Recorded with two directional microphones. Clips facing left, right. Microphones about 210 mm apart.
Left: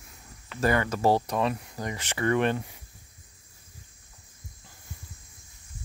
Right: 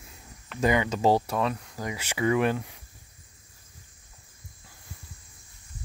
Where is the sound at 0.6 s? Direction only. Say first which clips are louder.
Right 1 dB; 15° right (ahead or behind).